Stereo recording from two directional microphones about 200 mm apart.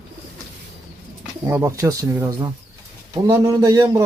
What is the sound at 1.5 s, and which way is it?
A man's voice, 10° right (ahead or behind).